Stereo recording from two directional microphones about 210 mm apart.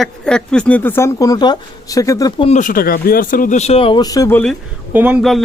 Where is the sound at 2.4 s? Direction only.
35° left (ahead or behind); by 4.6 s 5° left (ahead or behind).